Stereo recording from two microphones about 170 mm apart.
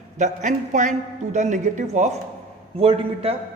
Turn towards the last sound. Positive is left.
turn(degrees=-35)  # may be behind; listen again after turning